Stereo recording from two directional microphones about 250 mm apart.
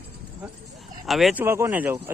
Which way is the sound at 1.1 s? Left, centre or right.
Centre.